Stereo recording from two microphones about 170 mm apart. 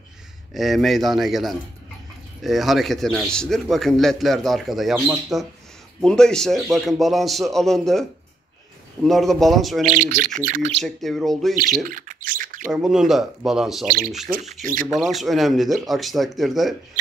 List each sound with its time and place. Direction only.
0.6 s a man's voice: centre (ahead or behind)
9.8 s speech: 50° right (ahead or behind)
10.8 s a man's voice: centre (ahead or behind)
11.5 s speech: 60° right (ahead or behind)
12.7 s a man's voice: 5° right (ahead or behind)
13.8 s speech: 55° right (ahead or behind)
14.4 s speech: 45° right (ahead or behind)
15.0 s a man's voice: centre (ahead or behind)